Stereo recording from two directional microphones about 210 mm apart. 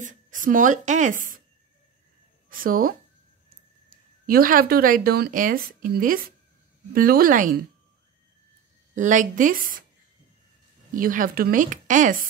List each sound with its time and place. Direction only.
0.0 s speech: 40° right (ahead or behind)
2.5 s speech: 40° right (ahead or behind)
3.9 s speech: 45° right (ahead or behind)
8.9 s a woman's voice: 35° right (ahead or behind)
11.0 s a woman's voice: 40° right (ahead or behind)